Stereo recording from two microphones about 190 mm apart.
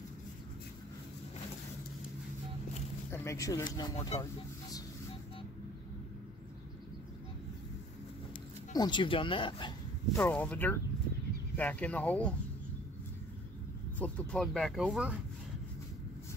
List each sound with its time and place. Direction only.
3.1 s speech: 15° left (ahead or behind)
8.7 s speech: 25° left (ahead or behind)
10.1 s speech: 10° left (ahead or behind)
13.9 s speech: 10° left (ahead or behind)